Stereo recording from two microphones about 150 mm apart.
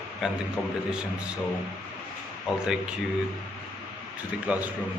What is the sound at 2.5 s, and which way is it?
Speech, 5° right (ahead or behind).